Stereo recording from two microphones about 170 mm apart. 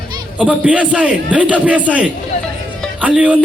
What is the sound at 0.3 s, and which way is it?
A man's voice, 5° right (ahead or behind).